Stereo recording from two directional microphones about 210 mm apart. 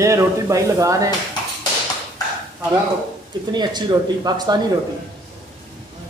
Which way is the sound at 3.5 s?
20° right (ahead or behind).